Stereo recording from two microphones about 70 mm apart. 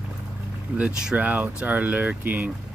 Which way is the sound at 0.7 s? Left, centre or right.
Centre.